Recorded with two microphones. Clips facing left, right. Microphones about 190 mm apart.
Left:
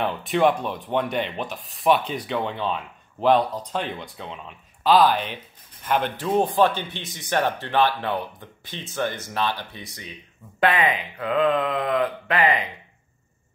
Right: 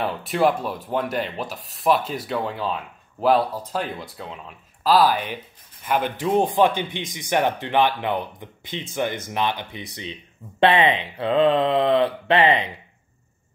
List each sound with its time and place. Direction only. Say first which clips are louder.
0.0 s speech: even; 5° right (ahead or behind); by 12.6 s 30° right (ahead or behind)